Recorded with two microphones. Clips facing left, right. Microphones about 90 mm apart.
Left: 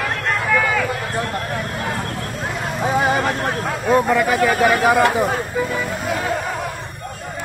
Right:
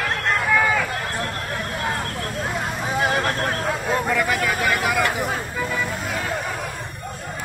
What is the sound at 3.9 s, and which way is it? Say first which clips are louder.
Speech: left 7 dB; 25° left (ahead or behind).